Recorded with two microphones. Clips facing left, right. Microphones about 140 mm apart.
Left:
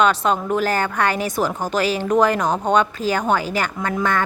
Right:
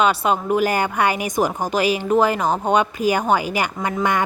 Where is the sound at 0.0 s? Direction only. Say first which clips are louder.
Left 1 dB; 10° right (ahead or behind).